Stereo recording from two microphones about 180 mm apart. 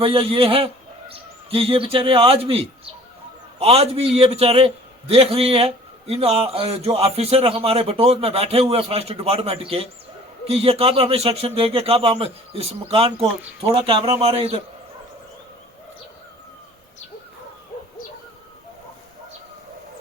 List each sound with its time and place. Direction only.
0.0 s a man's voice: 30° right (ahead or behind)